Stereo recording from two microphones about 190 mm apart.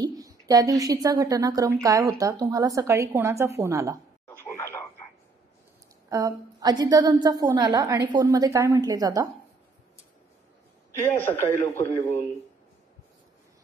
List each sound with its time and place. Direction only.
0.0 s a woman's voice: 20° right (ahead or behind)
4.6 s a sound: 10° left (ahead or behind)
6.0 s a woman's voice: 20° right (ahead or behind)
11.0 s speech: 15° left (ahead or behind)